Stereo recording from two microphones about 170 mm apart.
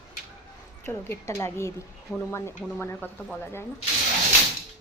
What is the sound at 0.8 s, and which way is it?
Speech, 15° left (ahead or behind).